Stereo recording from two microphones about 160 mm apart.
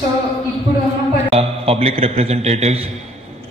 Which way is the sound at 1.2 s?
40° right (ahead or behind).